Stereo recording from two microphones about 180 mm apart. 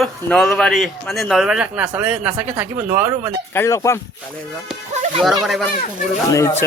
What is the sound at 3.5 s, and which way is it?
Speech, 15° left (ahead or behind).